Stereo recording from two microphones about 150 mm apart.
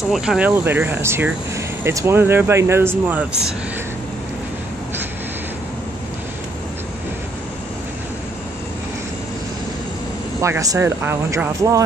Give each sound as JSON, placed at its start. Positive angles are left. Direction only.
{"t": 0.1, "sound": "speech", "side_deg": -5}
{"t": 10.4, "sound": "speech", "side_deg": -20}